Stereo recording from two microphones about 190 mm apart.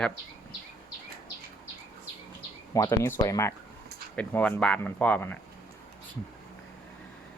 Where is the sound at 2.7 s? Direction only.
15° left (ahead or behind).